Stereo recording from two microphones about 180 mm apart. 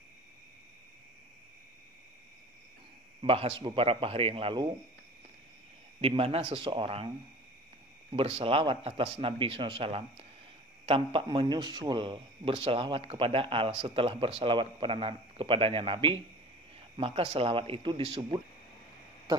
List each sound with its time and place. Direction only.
3.2 s speech: 30° right (ahead or behind)
5.9 s a man's voice: 30° right (ahead or behind)
8.4 s a man's voice: 30° right (ahead or behind)